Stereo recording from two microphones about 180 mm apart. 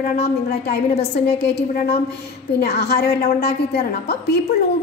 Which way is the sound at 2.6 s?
60° left (ahead or behind).